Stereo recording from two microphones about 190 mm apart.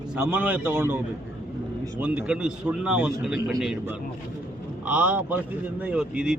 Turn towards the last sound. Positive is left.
turn(degrees=-5)  # may be behind; listen again after turning